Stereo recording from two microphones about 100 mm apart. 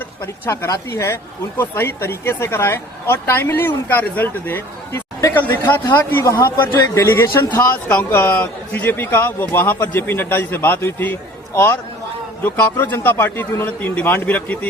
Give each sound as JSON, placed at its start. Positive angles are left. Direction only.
{"t": 0.5, "sound": "speech", "side_deg": 30}